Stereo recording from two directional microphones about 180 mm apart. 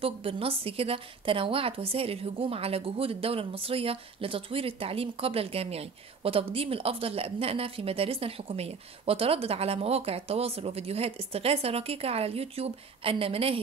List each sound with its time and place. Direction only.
0.0 s a woman's voice: 30° right (ahead or behind)